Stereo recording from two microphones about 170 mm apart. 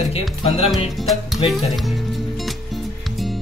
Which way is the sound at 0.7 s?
Centre (ahead or behind).